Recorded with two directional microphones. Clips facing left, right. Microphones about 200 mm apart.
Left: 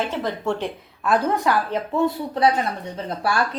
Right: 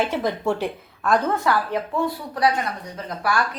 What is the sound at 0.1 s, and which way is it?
Speech, 10° right (ahead or behind).